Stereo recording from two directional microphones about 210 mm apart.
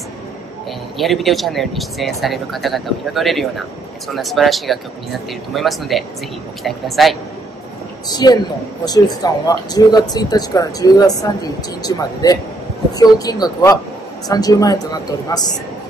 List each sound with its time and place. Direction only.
0.9 s speech: centre (ahead or behind)
8.1 s a man's voice: 20° left (ahead or behind)